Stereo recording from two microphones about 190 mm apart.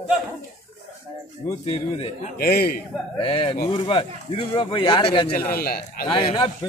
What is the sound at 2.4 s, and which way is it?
Speech, 55° left (ahead or behind).